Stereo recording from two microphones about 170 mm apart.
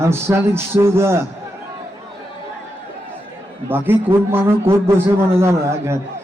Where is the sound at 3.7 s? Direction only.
10° right (ahead or behind).